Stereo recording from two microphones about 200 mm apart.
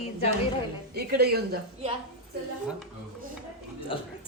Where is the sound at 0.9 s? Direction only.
50° right (ahead or behind).